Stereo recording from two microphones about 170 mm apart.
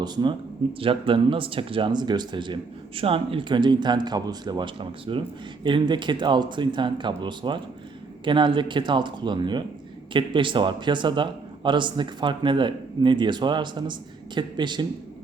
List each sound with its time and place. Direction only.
0.0 s speech: 25° right (ahead or behind)